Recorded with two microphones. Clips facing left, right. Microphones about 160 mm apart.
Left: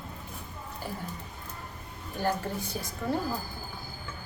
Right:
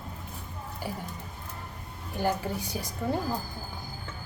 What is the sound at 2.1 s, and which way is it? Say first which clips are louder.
Speech: right 1 dB; 15° right (ahead or behind).